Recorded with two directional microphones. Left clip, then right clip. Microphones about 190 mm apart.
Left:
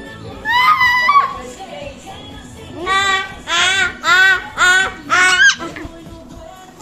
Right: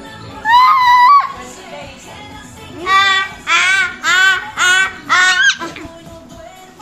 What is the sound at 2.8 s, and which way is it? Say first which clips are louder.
Child singing: right 4 dB; 35° right (ahead or behind).